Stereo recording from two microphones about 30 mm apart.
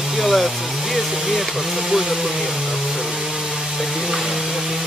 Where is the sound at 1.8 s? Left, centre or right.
Centre.